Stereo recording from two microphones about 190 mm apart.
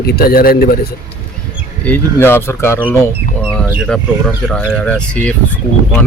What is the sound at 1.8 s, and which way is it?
Speech, 10° left (ahead or behind).